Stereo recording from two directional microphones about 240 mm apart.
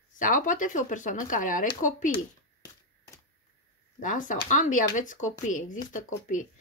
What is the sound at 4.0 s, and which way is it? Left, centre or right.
Speech, left.